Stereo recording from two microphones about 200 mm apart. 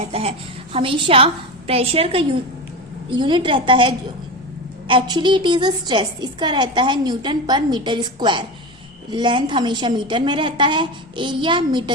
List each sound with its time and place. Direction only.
0.1 s a woman's voice: 30° right (ahead or behind)